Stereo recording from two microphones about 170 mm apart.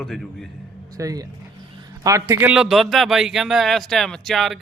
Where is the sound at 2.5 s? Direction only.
5° right (ahead or behind).